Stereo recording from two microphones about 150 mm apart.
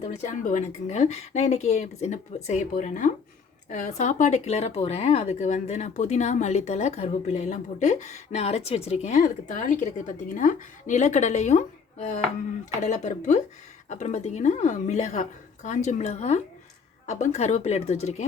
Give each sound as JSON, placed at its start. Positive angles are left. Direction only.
{"t": 0.2, "sound": "speech", "side_deg": 55}